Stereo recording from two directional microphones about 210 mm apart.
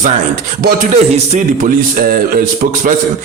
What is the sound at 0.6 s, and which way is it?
Mantra, 35° right (ahead or behind).